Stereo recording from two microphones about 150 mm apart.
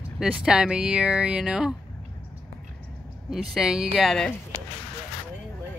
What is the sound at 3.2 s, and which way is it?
Speech, 5° right (ahead or behind).